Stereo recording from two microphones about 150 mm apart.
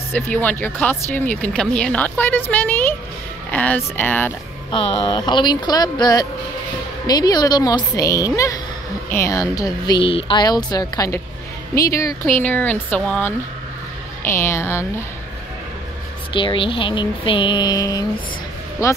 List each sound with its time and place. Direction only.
0.1 s speech: 10° left (ahead or behind)
4.6 s speech: 30° left (ahead or behind)
12.4 s speech: 10° left (ahead or behind)
16.3 s speech: 35° left (ahead or behind)